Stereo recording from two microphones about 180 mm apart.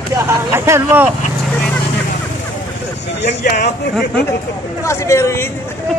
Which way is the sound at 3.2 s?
50° left (ahead or behind).